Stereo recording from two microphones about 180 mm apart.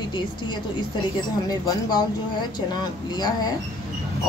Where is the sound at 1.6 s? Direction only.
25° left (ahead or behind).